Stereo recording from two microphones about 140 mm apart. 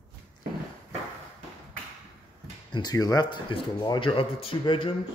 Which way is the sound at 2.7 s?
30° left (ahead or behind).